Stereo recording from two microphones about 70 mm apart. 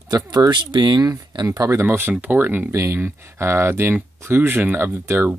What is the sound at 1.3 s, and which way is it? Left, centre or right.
Speech, right.